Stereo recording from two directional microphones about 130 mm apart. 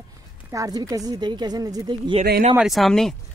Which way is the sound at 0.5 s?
25° right (ahead or behind).